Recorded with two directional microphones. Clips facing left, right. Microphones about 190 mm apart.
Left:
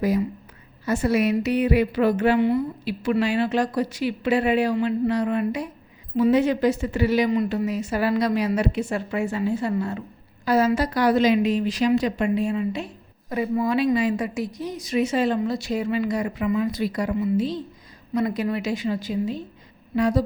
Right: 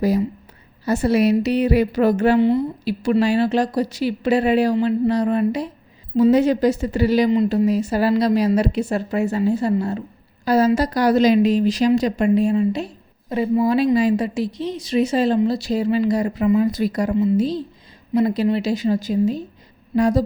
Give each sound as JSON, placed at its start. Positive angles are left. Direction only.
{"t": 0.9, "sound": "a woman's voice", "side_deg": -35}
{"t": 20.0, "sound": "mantra", "side_deg": -45}